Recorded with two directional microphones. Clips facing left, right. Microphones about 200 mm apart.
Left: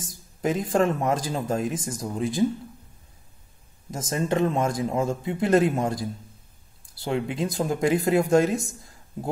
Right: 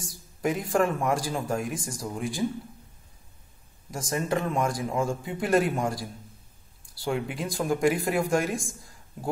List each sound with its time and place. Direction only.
0.4 s speech: 20° left (ahead or behind)
3.9 s speech: 20° left (ahead or behind)